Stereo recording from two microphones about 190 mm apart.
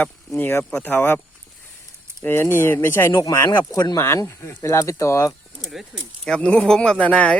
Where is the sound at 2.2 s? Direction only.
10° left (ahead or behind).